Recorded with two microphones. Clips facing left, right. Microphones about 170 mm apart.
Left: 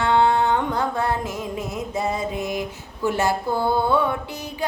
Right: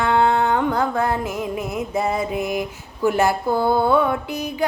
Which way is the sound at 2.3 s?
10° right (ahead or behind).